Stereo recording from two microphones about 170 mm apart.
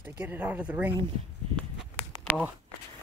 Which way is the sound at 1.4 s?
35° right (ahead or behind).